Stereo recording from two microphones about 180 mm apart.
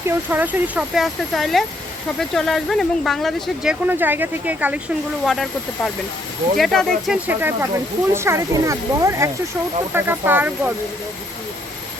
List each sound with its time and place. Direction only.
0.1 s speech: 10° right (ahead or behind)
5.2 s speech: centre (ahead or behind)
7.3 s speech: 10° right (ahead or behind)